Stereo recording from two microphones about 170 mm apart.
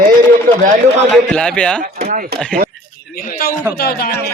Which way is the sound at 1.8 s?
65° right (ahead or behind).